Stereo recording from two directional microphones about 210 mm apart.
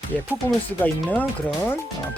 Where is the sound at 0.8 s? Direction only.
10° left (ahead or behind).